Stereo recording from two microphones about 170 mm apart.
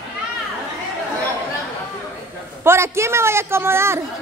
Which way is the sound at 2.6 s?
15° right (ahead or behind).